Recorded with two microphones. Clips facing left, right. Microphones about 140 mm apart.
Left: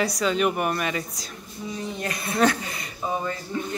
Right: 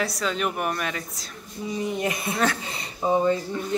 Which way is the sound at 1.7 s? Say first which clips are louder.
Right 5 dB; 15° right (ahead or behind).